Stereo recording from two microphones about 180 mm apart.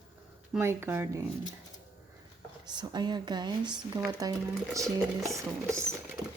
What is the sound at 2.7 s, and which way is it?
Speech, 25° right (ahead or behind).